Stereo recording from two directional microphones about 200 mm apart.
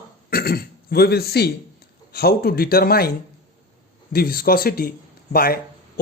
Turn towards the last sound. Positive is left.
turn(degrees=50)  # may be behind; listen again after turning